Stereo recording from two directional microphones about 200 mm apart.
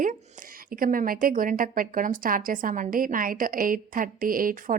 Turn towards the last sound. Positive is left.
turn(degrees=-45)  # may be behind; listen again after turning